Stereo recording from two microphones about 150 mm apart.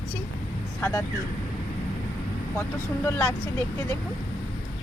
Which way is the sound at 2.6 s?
15° left (ahead or behind).